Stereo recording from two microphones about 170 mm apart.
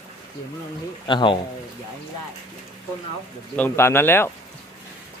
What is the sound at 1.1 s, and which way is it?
Speech, 30° left (ahead or behind).